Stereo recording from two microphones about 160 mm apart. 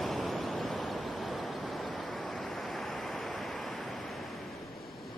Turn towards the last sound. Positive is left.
turn(degrees=0)  # may be behind; listen again after turning